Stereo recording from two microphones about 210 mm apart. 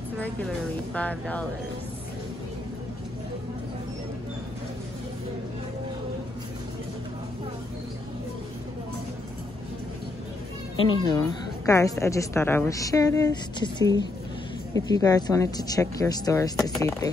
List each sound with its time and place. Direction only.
0.9 s a woman's voice: 5° left (ahead or behind)
10.8 s a woman's voice: 20° left (ahead or behind)